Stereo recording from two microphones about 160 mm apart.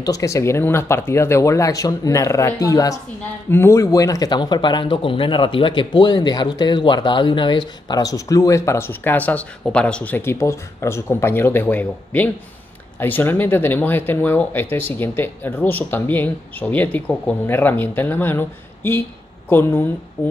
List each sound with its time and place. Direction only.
0.0 s speech: 20° left (ahead or behind)